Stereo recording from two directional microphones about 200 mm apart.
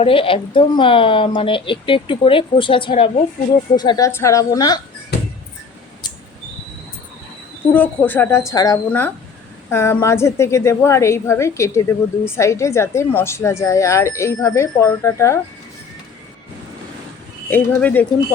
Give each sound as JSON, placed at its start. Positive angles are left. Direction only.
{"t": 0.0, "sound": "a woman's voice", "side_deg": 25}
{"t": 7.7, "sound": "a woman's voice", "side_deg": 10}
{"t": 17.5, "sound": "a woman's voice", "side_deg": 10}